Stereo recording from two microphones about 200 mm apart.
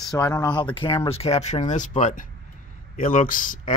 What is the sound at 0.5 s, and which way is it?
A man's voice, 25° left (ahead or behind).